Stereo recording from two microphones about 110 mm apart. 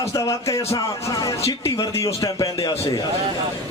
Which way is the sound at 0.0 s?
30° left (ahead or behind).